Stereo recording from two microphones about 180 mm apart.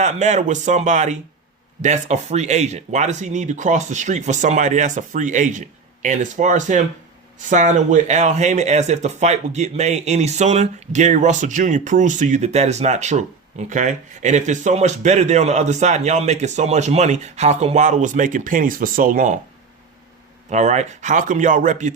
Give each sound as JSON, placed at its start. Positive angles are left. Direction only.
{"t": 0.0, "sound": "speech", "side_deg": -40}
{"t": 20.5, "sound": "speech", "side_deg": -40}